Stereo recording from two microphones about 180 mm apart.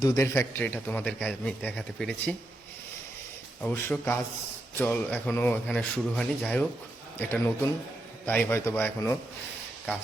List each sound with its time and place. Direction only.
0.0 s a man's voice: 15° left (ahead or behind)
3.6 s a man's voice: 10° left (ahead or behind)